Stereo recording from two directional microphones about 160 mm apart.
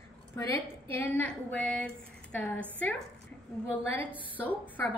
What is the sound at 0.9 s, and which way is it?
A woman's voice, 10° left (ahead or behind).